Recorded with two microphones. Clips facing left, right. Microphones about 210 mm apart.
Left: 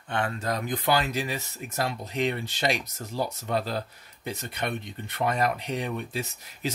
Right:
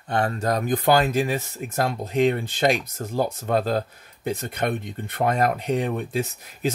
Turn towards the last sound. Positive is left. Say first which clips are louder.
# right 6 dB
turn(degrees=-50)  # may be behind; listen again after turning